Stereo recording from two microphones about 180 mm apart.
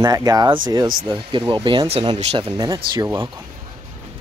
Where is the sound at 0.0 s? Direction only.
20° right (ahead or behind).